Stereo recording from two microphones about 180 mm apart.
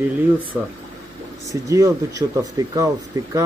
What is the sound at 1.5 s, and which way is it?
A man's voice, 20° right (ahead or behind).